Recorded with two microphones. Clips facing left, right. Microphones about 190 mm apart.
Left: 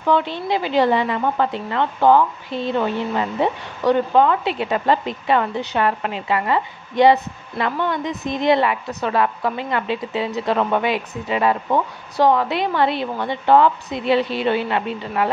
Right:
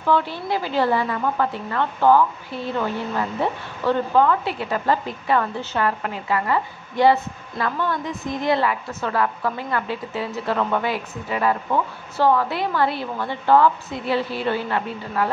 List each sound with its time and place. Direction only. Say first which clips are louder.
0.0 s speech: left 2 dB; 20° left (ahead or behind)